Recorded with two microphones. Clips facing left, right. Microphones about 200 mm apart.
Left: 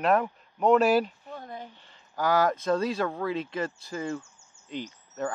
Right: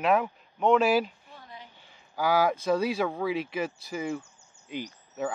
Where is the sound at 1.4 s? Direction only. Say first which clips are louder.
Left 7 dB; 50° left (ahead or behind).